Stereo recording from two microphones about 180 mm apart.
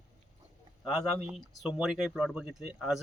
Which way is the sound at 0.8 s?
Centre (ahead or behind).